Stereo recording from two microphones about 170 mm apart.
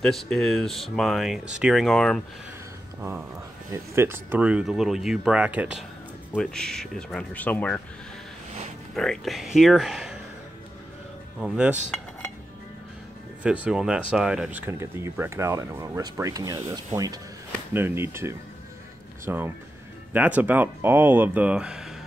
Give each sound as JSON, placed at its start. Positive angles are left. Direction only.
{"t": 0.0, "sound": "speech", "side_deg": 0}
{"t": 3.0, "sound": "speech", "side_deg": -15}
{"t": 6.3, "sound": "speech", "side_deg": 5}
{"t": 8.9, "sound": "speech", "side_deg": 5}
{"t": 11.4, "sound": "speech", "side_deg": -5}
{"t": 13.4, "sound": "speech", "side_deg": -5}